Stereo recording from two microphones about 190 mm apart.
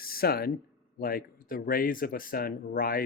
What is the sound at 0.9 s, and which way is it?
Speech, 50° left (ahead or behind).